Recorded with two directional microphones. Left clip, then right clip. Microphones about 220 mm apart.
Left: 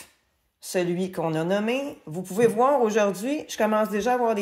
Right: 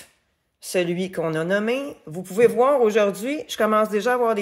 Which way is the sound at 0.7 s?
25° right (ahead or behind).